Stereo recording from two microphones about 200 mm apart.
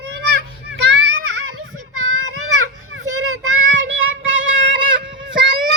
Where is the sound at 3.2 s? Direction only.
80° right.